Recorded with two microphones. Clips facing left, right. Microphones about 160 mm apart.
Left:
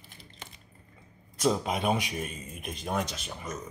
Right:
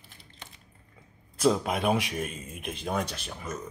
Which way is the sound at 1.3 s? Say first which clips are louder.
Right 2 dB; centre (ahead or behind).